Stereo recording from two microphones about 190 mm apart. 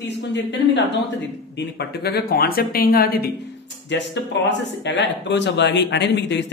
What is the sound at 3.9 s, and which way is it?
Speech, 70° left (ahead or behind).